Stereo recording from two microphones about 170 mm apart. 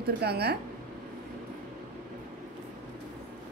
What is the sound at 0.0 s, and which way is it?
Speech, 70° right (ahead or behind).